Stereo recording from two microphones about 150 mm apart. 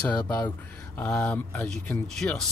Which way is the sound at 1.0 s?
10° left (ahead or behind).